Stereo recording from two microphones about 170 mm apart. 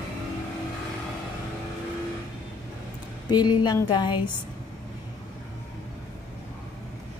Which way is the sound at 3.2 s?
25° left (ahead or behind).